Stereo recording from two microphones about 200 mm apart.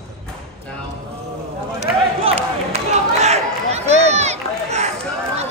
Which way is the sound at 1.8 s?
35° right (ahead or behind).